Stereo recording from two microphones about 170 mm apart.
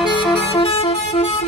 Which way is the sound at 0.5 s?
35° left (ahead or behind).